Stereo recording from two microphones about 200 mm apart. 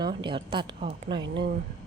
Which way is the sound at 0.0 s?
25° right (ahead or behind).